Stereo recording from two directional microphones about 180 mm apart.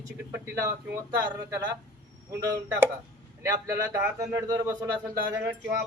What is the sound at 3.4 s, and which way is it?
Speech, 20° right (ahead or behind).